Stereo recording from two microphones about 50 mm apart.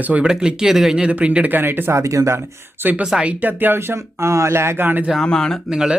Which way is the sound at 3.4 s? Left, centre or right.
Right.